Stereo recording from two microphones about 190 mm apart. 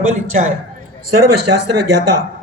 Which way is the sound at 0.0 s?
90° right.